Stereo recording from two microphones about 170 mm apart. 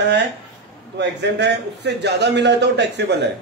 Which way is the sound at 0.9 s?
90° right.